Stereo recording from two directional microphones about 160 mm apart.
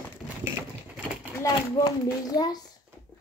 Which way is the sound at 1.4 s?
25° left (ahead or behind).